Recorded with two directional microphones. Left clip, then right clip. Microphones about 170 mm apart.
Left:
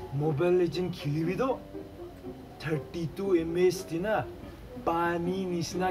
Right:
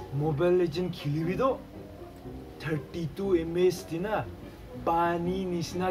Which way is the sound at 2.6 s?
Centre (ahead or behind).